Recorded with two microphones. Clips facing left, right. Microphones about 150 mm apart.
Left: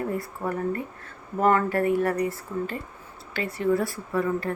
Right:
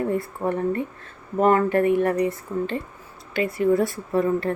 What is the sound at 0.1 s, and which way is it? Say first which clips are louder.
Speech: right 5 dB; 25° right (ahead or behind).